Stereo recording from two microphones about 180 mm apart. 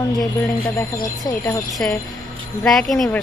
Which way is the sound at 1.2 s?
10° left (ahead or behind).